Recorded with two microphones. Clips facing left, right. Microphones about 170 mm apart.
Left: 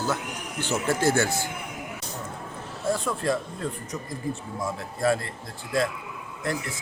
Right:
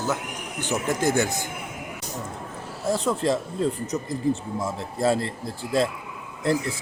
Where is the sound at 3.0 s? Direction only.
25° right (ahead or behind).